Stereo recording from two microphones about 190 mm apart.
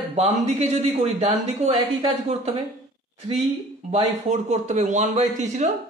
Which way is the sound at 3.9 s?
35° right (ahead or behind).